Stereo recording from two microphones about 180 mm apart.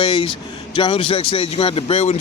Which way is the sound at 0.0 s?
25° left (ahead or behind).